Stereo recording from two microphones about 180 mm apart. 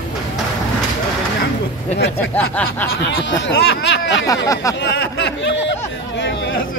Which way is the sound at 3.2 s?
90° left.